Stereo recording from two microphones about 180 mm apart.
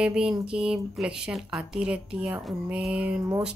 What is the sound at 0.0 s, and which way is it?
Speech, 5° right (ahead or behind).